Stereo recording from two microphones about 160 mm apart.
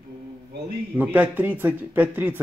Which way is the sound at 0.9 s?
10° right (ahead or behind).